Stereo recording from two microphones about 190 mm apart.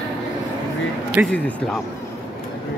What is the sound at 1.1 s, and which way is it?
Speech, 5° left (ahead or behind).